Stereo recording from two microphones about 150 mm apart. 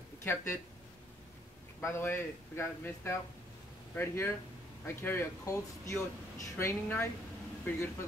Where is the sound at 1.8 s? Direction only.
15° left (ahead or behind).